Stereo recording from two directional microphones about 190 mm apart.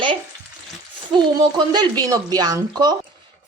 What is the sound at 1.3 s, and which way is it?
Speech, 20° right (ahead or behind).